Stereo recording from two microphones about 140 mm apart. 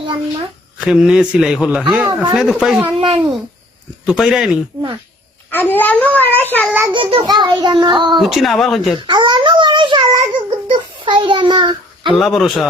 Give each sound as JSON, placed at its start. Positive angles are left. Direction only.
{"t": 0.8, "sound": "a man's voice", "side_deg": -5}
{"t": 3.0, "sound": "a child's voice", "side_deg": -35}
{"t": 4.0, "sound": "a man's voice", "side_deg": -5}
{"t": 5.5, "sound": "a child's voice", "side_deg": 15}
{"t": 6.7, "sound": "a child's voice", "side_deg": -15}
{"t": 6.9, "sound": "a child's voice", "side_deg": -40}
{"t": 8.2, "sound": "a man's voice", "side_deg": 0}
{"t": 9.0, "sound": "a sound", "side_deg": -35}
{"t": 12.2, "sound": "a man's voice", "side_deg": 0}